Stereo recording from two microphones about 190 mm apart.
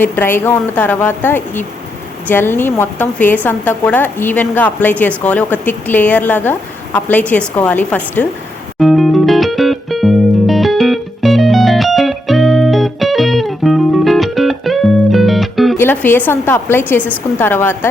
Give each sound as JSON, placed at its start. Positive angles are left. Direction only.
{"t": 0.0, "sound": "a woman's voice", "side_deg": 10}
{"t": 8.8, "sound": "music", "side_deg": 0}
{"t": 15.8, "sound": "a woman's voice", "side_deg": 10}